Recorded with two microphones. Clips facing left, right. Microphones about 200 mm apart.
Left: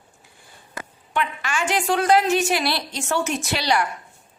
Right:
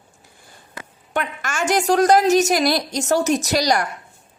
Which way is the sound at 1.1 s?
45° right (ahead or behind).